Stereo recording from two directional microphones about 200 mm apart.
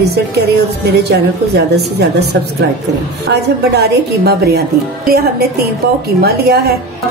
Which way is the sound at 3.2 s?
55° right (ahead or behind).